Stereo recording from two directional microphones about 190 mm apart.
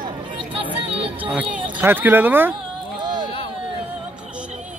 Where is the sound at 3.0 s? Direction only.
25° right (ahead or behind).